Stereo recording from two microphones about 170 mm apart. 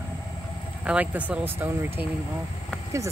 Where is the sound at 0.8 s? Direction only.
10° right (ahead or behind).